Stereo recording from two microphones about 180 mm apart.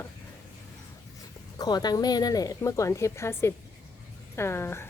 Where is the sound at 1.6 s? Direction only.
20° left (ahead or behind).